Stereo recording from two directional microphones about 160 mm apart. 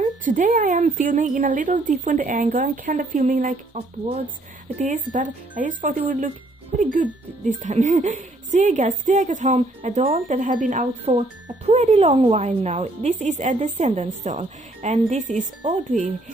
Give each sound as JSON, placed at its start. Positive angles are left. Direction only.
{"t": 0.0, "sound": "a woman's voice", "side_deg": -55}
{"t": 11.1, "sound": "speech", "side_deg": -40}